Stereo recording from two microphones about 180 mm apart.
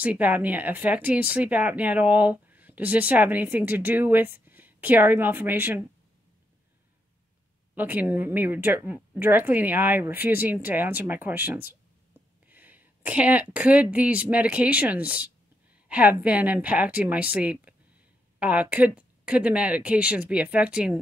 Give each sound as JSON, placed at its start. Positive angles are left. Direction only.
{"t": 0.0, "sound": "speech", "side_deg": -10}
{"t": 7.7, "sound": "speech", "side_deg": -10}